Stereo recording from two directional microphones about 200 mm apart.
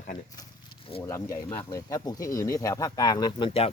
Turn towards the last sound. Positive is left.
turn(degrees=25)  # may be behind; listen again after turning